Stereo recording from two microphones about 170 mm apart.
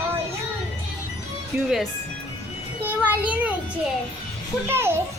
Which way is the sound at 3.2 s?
10° right (ahead or behind).